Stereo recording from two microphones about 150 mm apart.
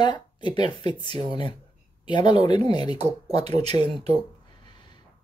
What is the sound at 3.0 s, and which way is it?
Speech, 45° right (ahead or behind).